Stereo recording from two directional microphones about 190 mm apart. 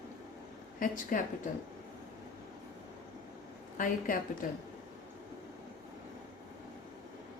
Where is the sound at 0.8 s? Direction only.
45° left (ahead or behind).